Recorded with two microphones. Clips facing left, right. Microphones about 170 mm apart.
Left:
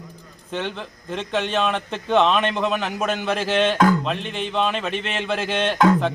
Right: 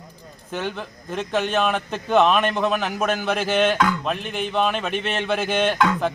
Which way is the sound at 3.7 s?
40° left (ahead or behind).